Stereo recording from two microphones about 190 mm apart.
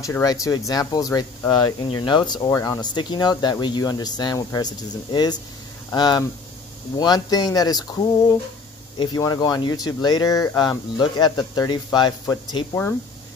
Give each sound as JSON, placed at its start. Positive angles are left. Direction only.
{"t": 0.0, "sound": "speech", "side_deg": 15}